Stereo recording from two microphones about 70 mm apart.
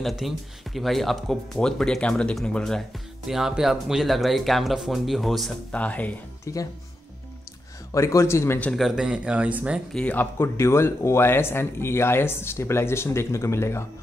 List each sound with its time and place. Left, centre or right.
0.0 s speech: centre
3.3 s speech: centre
5.7 s speech: centre
6.4 s speech: left
7.9 s a man's voice: left
8.7 s speech: centre
9.0 s speech: centre
10.1 s speech: left